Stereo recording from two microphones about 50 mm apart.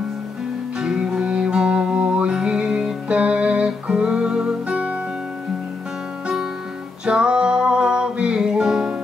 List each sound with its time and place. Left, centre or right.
0.7 s music: centre
7.1 s music: centre